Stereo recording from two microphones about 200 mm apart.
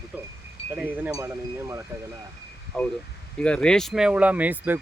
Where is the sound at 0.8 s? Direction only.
10° right (ahead or behind).